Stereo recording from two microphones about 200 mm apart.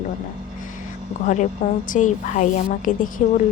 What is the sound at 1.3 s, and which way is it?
A woman's voice, 35° left (ahead or behind).